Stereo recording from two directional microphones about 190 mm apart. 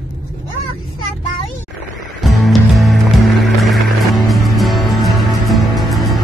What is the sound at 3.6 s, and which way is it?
Music, centre (ahead or behind).